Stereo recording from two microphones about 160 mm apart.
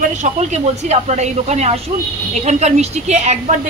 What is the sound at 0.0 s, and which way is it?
Speech, 45° right (ahead or behind).